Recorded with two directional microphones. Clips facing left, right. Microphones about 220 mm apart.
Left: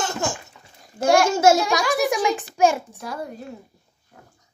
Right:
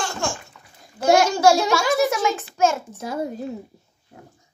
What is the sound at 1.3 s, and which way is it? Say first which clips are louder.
A child's voice: even; 25° left (ahead or behind).